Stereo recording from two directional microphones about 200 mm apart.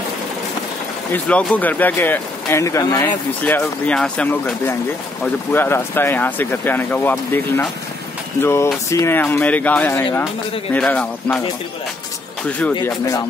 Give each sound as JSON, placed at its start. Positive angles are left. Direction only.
{"t": 1.1, "sound": "speech", "side_deg": 5}
{"t": 12.4, "sound": "speech", "side_deg": 5}